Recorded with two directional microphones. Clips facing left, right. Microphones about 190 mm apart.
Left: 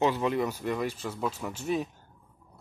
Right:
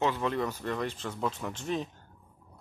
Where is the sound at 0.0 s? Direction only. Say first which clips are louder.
Left 3 dB; 10° left (ahead or behind).